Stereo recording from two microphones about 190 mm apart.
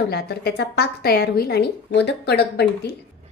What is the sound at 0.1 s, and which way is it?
A woman's voice, 55° left (ahead or behind).